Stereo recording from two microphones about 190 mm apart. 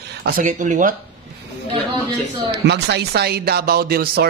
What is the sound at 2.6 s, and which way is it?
Speech, 60° right (ahead or behind).